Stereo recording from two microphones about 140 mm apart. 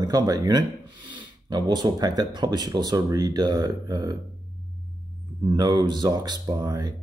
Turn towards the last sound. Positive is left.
turn(degrees=-30)  # may be behind; listen again after turning